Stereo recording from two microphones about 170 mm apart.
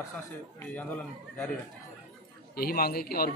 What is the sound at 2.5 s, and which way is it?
Speech, 65° left (ahead or behind).